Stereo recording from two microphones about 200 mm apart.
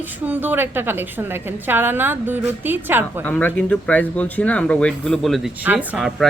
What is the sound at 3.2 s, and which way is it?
Speech, 10° left (ahead or behind).